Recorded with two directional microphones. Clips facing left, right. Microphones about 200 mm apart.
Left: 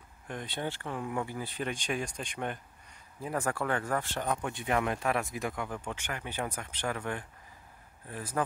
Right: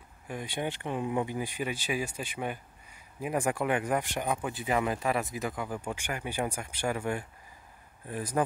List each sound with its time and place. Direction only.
0.3 s speech: 10° right (ahead or behind)